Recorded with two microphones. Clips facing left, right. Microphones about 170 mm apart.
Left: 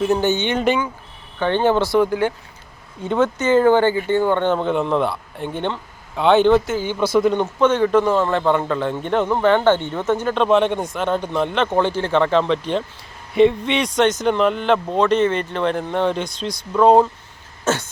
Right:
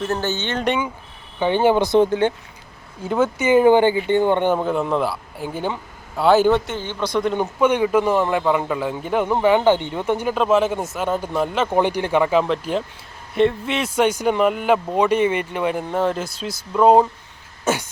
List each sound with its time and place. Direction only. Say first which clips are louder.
0.0 s speech: left 5 dB; 15° left (ahead or behind)
1.4 s a man's voice: right 1 dB; 10° right (ahead or behind)
3.0 s speech: left 1 dB; 5° right (ahead or behind)
7.3 s a man's voice: left 1 dB; 10° right (ahead or behind)